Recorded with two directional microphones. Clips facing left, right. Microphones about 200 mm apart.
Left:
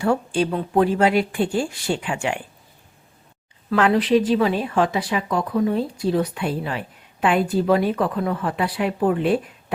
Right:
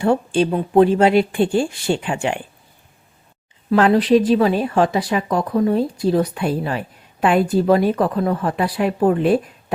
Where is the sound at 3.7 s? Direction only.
35° right (ahead or behind).